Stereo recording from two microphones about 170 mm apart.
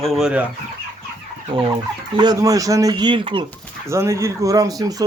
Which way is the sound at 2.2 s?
20° right (ahead or behind).